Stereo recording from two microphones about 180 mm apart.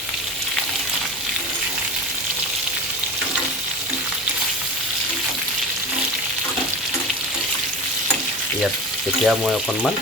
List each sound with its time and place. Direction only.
9.2 s speech: centre (ahead or behind)